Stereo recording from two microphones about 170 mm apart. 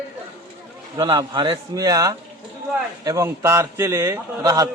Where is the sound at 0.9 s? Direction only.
25° right (ahead or behind).